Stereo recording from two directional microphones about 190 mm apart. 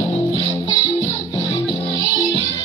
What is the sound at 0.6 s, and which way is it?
Music, 15° left (ahead or behind).